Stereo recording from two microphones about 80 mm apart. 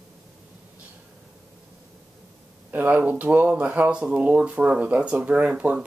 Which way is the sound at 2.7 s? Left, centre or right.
Right.